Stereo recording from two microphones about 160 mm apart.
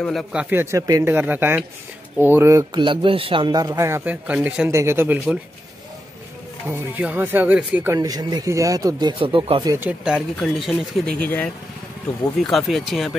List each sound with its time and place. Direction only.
0.0 s speech: centre (ahead or behind); by 1.1 s 20° right (ahead or behind)
1.1 s speech: 10° right (ahead or behind)
2.8 s speech: 30° right (ahead or behind); by 5.2 s 15° right (ahead or behind)
6.7 s speech: 10° right (ahead or behind); by 9.8 s 30° right (ahead or behind)
9.8 s speech: 5° right (ahead or behind)